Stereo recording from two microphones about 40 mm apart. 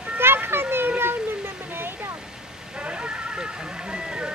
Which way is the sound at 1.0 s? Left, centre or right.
Right.